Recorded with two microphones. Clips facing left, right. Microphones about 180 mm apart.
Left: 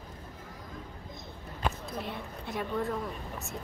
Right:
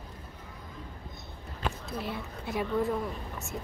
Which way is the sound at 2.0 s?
5° right (ahead or behind).